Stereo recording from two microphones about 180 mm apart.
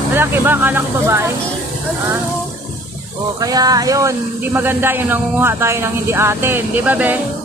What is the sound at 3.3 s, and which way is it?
Speech, 20° right (ahead or behind).